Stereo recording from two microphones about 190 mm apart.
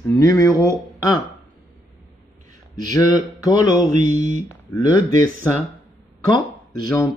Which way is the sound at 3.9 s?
40° right (ahead or behind).